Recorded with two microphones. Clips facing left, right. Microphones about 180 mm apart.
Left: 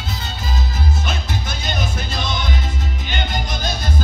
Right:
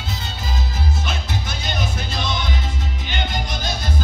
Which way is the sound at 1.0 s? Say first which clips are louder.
Left 1 dB; 45° left (ahead or behind).